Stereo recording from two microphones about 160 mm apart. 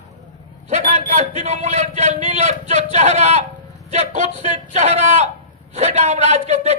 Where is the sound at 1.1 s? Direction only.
45° right (ahead or behind).